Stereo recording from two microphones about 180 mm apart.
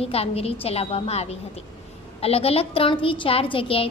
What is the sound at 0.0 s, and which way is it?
A woman's voice, 35° left (ahead or behind).